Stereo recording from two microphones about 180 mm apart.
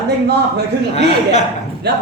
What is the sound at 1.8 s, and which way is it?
Speech, 65° right (ahead or behind).